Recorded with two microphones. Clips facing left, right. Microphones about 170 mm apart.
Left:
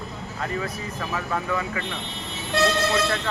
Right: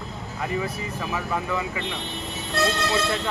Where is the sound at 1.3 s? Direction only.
20° right (ahead or behind).